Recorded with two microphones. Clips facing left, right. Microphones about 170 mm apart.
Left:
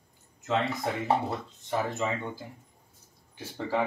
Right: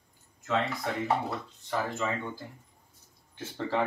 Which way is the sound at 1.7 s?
20° left (ahead or behind).